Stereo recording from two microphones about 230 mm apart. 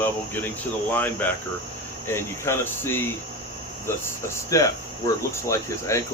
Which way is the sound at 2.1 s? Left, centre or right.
Centre.